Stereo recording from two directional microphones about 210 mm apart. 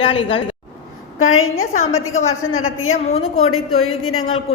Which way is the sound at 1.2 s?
75° left (ahead or behind).